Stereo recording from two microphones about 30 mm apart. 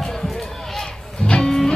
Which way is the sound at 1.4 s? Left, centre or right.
Centre.